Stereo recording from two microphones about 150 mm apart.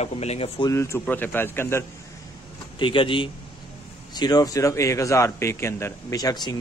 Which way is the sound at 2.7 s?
35° left (ahead or behind).